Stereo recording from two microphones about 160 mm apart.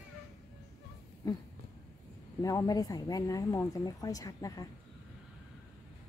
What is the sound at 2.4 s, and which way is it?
Speech, 20° left (ahead or behind).